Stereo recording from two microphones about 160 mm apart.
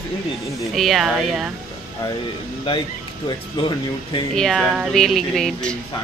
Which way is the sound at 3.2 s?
30° left (ahead or behind).